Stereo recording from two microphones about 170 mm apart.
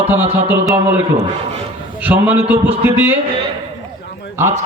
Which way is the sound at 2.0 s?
10° right (ahead or behind).